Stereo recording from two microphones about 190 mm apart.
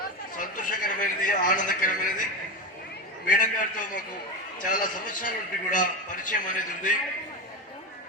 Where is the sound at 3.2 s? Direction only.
45° left (ahead or behind).